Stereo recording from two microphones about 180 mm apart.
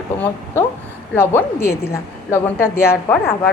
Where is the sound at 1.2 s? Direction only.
15° left (ahead or behind).